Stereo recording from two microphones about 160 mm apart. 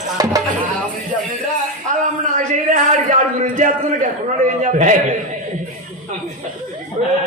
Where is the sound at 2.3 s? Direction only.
50° right (ahead or behind).